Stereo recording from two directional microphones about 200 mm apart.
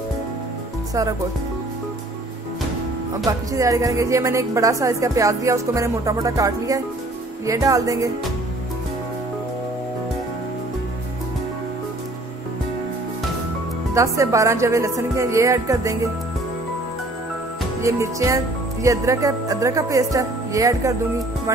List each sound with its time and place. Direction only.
3.3 s speech: 15° right (ahead or behind)
13.9 s speech: 15° right (ahead or behind)
17.8 s speech: 15° right (ahead or behind)